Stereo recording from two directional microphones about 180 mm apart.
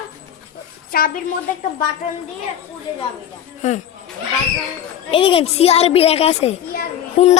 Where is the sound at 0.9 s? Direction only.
55° left (ahead or behind).